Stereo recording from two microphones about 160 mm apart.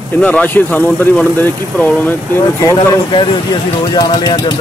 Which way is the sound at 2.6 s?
25° left (ahead or behind).